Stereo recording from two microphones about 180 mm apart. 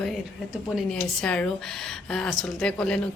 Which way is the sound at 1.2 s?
5° left (ahead or behind).